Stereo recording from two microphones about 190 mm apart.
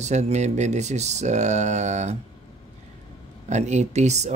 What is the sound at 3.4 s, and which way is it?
Speech, 40° right (ahead or behind).